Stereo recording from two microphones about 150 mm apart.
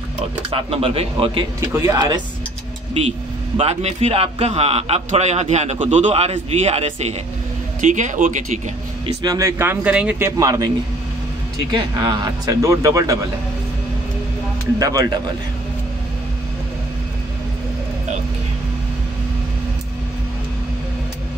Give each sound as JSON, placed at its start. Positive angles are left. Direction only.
{"t": 0.5, "sound": "speech", "side_deg": -40}
{"t": 1.6, "sound": "a man's voice", "side_deg": -20}
{"t": 2.9, "sound": "a man's voice", "side_deg": -40}
{"t": 7.8, "sound": "speech", "side_deg": -55}
{"t": 9.0, "sound": "a man's voice", "side_deg": -25}
{"t": 11.7, "sound": "a man's voice", "side_deg": -30}
{"t": 14.8, "sound": "a man's voice", "side_deg": -25}